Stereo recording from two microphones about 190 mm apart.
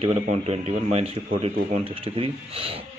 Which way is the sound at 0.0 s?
35° right (ahead or behind).